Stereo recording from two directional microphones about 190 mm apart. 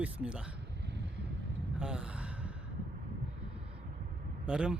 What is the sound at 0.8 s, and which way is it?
Vehicle, 65° right (ahead or behind).